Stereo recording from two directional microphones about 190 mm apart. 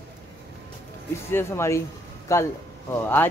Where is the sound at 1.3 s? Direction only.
15° left (ahead or behind).